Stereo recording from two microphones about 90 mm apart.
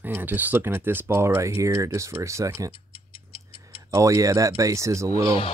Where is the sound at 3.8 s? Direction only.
35° right (ahead or behind).